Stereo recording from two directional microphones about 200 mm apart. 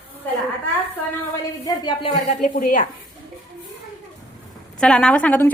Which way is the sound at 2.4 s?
40° left (ahead or behind).